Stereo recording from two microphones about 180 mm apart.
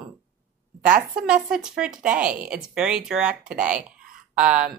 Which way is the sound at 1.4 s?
5° right (ahead or behind).